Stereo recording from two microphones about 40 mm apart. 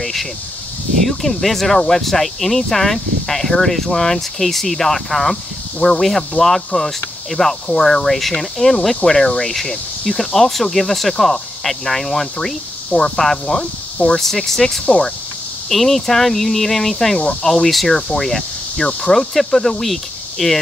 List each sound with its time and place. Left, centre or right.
0.0 s speech: centre
14.9 s speech: left
15.7 s speech: centre